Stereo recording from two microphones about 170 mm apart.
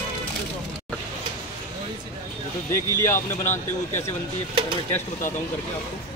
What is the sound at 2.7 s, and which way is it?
Speech, 15° left (ahead or behind).